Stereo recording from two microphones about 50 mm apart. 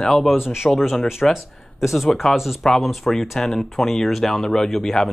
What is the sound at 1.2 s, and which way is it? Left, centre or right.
Speech, centre.